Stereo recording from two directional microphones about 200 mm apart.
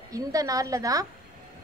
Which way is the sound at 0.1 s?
15° right (ahead or behind).